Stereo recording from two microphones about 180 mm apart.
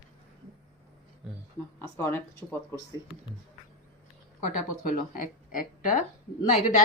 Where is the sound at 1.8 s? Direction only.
15° left (ahead or behind).